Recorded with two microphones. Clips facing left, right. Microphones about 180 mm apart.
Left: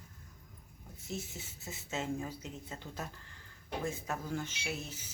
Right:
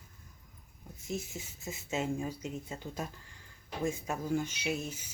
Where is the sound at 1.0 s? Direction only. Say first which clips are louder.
Right 4 dB; 10° right (ahead or behind).